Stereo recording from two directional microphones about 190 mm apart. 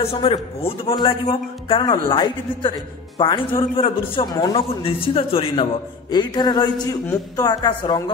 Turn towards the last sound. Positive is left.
turn(degrees=20)  # may be behind; listen again after turning